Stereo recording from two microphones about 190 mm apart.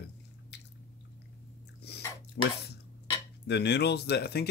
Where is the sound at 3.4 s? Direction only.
65° left (ahead or behind).